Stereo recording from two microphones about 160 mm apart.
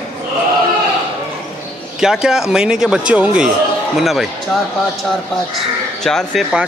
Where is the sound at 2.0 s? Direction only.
5° right (ahead or behind).